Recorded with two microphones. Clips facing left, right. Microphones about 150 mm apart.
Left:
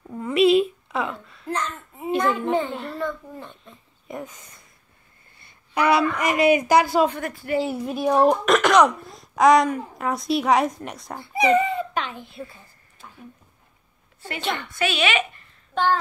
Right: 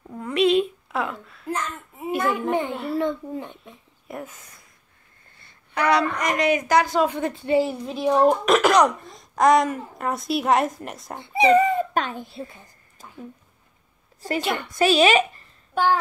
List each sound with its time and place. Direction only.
0.1 s a sound: 5° left (ahead or behind); by 2.7 s 15° right (ahead or behind)
2.7 s speech: 5° right (ahead or behind)
3.0 s a child's voice: 15° right (ahead or behind)
4.1 s speech: centre (ahead or behind)
5.8 s speech: 5° left (ahead or behind)
7.2 s speech: 25° right (ahead or behind)
7.5 s speech: 5° left (ahead or behind)
8.5 s speech: 5° right (ahead or behind)
11.1 s speech: 30° right (ahead or behind)
11.6 s a child's voice: 45° right (ahead or behind)
13.0 s a sound: 40° right (ahead or behind)
14.4 s a child's voice: 10° right (ahead or behind)
14.7 s a woman's voice: 40° right (ahead or behind)
15.7 s speech: 10° right (ahead or behind)